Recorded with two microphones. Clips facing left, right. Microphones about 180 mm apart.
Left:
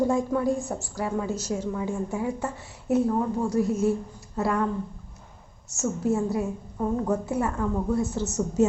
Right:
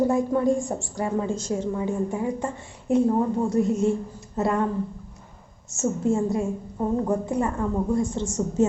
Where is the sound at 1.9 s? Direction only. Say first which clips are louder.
Right 3 dB; 10° left (ahead or behind).